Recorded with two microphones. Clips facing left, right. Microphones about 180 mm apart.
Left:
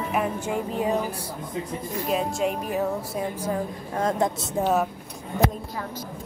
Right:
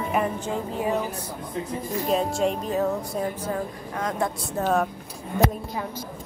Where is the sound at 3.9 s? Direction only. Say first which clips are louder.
Left 3 dB; 25° left (ahead or behind).